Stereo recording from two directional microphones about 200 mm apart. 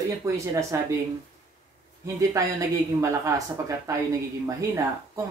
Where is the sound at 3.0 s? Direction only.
15° right (ahead or behind).